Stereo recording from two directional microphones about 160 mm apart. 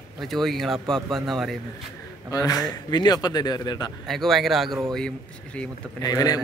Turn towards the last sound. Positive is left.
turn(degrees=25)  # may be behind; listen again after turning